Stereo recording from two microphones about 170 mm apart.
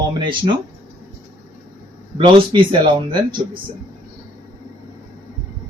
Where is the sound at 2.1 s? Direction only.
30° right (ahead or behind).